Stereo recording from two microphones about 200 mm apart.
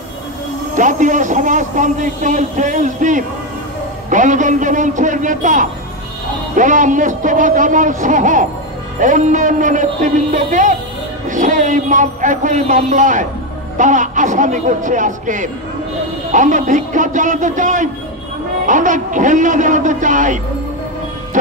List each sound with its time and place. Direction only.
0.7 s a man's voice: 40° right (ahead or behind)